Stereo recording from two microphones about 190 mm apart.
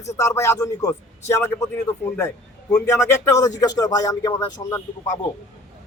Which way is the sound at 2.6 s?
5° left (ahead or behind).